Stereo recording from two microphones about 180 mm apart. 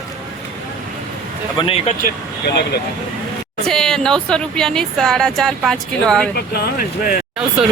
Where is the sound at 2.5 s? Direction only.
65° left (ahead or behind).